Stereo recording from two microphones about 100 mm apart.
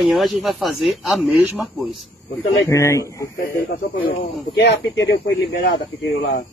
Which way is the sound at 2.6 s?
30° left (ahead or behind).